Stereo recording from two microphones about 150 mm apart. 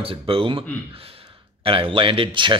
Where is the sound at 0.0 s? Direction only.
35° right (ahead or behind).